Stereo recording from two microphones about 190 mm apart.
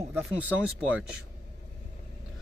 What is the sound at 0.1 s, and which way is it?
Speech, 10° right (ahead or behind).